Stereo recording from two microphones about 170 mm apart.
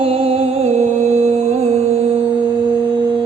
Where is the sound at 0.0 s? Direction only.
35° right (ahead or behind).